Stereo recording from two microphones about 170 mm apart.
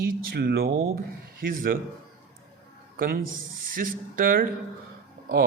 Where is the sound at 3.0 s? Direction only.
60° right (ahead or behind).